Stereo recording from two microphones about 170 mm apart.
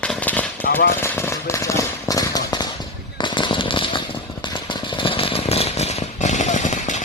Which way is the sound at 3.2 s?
25° left (ahead or behind).